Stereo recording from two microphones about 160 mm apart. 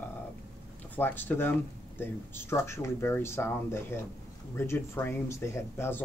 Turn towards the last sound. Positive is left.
turn(degrees=15)  # may be behind; listen again after turning